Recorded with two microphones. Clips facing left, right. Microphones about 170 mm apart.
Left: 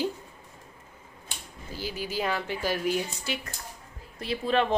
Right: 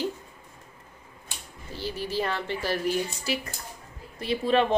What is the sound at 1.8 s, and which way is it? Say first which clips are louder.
A woman's voice: right 2 dB; 5° left (ahead or behind).